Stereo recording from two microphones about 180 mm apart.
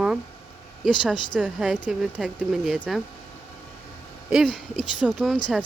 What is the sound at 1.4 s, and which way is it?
Speech, 5° right (ahead or behind).